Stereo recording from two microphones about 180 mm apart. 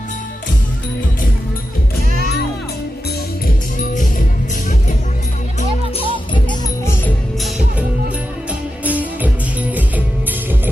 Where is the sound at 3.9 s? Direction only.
45° left (ahead or behind).